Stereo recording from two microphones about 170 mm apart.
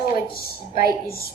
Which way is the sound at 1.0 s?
60° left (ahead or behind).